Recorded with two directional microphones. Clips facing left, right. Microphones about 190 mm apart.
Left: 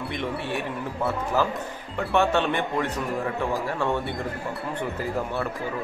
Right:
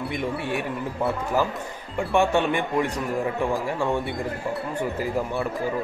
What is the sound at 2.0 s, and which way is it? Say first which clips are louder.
Speech: right 1 dB; 15° right (ahead or behind).